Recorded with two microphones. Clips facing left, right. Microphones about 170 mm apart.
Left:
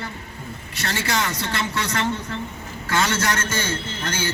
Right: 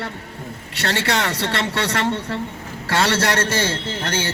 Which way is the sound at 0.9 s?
65° right (ahead or behind).